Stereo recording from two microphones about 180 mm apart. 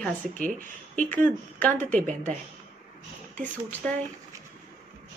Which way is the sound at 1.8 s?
45° right (ahead or behind).